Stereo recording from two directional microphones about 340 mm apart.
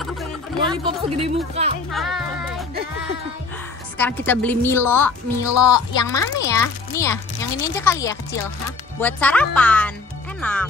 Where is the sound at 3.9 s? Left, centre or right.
Centre.